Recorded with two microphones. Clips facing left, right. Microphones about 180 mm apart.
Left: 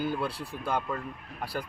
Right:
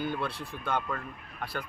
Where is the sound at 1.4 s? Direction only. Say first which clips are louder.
Left 2 dB; 35° left (ahead or behind).